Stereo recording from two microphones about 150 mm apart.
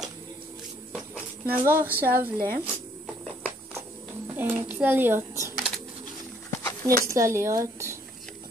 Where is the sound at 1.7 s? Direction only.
15° right (ahead or behind).